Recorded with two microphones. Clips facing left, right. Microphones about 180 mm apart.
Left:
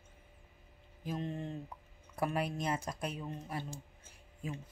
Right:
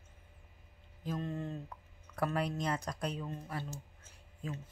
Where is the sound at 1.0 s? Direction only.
15° left (ahead or behind).